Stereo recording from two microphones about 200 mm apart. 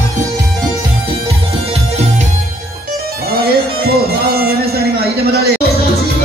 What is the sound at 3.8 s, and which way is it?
Music, 50° right (ahead or behind).